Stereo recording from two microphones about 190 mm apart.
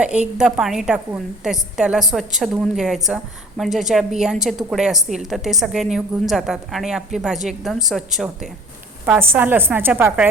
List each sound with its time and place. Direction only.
0.3 s a woman's voice: 5° right (ahead or behind)
9.0 s a woman's voice: 10° right (ahead or behind)